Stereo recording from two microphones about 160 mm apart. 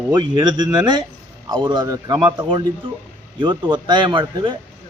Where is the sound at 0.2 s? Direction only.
30° right (ahead or behind).